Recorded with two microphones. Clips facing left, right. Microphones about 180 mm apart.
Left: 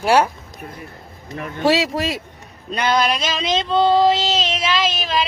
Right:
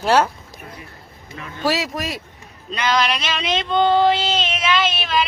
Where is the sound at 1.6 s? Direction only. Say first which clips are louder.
Left 4 dB; 25° left (ahead or behind).